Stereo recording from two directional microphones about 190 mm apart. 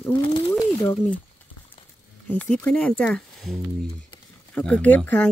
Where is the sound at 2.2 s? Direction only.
5° left (ahead or behind).